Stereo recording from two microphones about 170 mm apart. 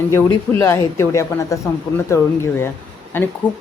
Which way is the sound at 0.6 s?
15° left (ahead or behind).